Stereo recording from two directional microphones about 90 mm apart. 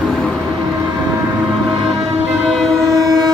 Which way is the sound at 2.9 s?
40° right (ahead or behind).